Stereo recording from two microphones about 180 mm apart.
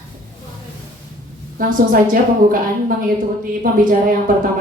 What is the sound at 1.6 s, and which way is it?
Speech, 50° right (ahead or behind).